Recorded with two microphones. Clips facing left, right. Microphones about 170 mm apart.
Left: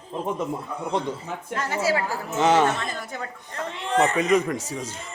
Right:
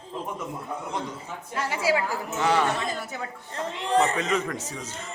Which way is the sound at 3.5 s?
35° right (ahead or behind).